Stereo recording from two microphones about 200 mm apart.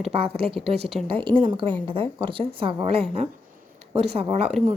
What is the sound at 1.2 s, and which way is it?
Speech, 25° right (ahead or behind).